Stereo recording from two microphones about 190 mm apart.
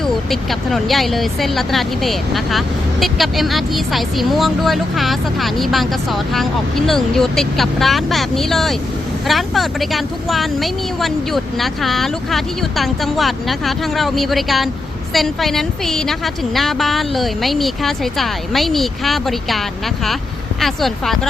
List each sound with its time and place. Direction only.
0.0 s speech: centre (ahead or behind)